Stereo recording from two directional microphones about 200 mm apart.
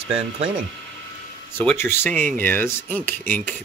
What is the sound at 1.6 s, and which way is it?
Speech, 10° left (ahead or behind).